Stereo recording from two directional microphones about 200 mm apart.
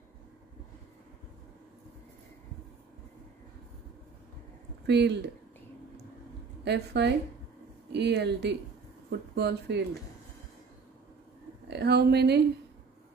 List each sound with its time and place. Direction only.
4.8 s speech: 60° right (ahead or behind)
6.6 s speech: 55° right (ahead or behind)
11.7 s speech: 55° right (ahead or behind)